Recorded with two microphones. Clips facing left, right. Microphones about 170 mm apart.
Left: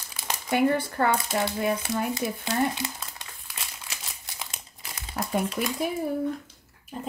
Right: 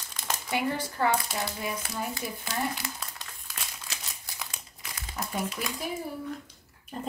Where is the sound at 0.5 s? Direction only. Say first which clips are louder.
Left 7 dB; 55° left (ahead or behind).